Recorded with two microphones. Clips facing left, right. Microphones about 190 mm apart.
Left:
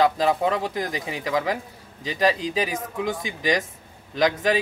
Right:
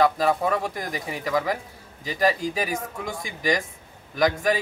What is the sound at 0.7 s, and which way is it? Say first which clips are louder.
A man's voice: left 3 dB; 20° left (ahead or behind).